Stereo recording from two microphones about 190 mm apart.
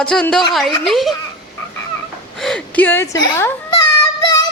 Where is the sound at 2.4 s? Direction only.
5° left (ahead or behind); by 3.5 s 20° left (ahead or behind).